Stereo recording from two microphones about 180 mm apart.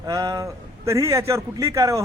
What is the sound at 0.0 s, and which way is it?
A man's voice, 20° right (ahead or behind).